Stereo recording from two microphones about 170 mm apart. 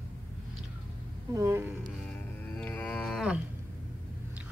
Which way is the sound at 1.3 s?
15° right (ahead or behind).